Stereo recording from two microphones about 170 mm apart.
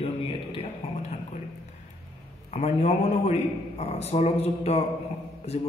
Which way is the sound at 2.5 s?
40° left (ahead or behind).